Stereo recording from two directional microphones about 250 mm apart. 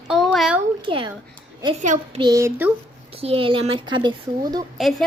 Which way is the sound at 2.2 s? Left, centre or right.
Centre.